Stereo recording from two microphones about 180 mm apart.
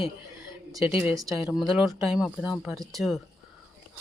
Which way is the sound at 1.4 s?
Centre (ahead or behind).